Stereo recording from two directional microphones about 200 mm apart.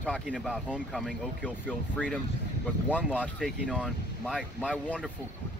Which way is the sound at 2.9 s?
10° left (ahead or behind).